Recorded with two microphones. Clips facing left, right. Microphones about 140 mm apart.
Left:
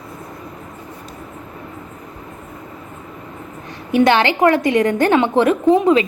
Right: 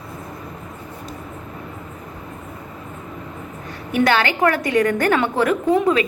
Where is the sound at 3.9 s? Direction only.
20° left (ahead or behind).